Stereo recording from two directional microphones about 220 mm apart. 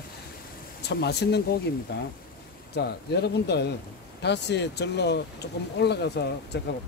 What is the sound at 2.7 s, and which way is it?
Speech, 50° left (ahead or behind).